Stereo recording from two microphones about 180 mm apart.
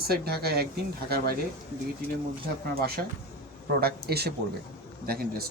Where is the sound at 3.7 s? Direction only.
60° right (ahead or behind).